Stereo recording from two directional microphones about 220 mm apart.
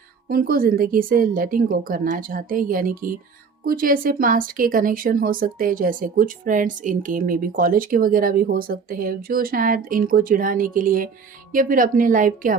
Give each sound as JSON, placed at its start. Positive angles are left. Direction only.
{"t": 0.3, "sound": "speech", "side_deg": -40}